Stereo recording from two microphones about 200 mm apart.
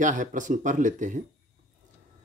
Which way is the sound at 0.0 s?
40° right (ahead or behind).